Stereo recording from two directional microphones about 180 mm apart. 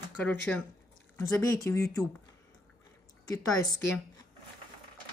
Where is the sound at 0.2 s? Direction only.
10° left (ahead or behind).